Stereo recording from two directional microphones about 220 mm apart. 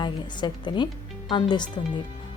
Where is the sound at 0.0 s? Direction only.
20° left (ahead or behind).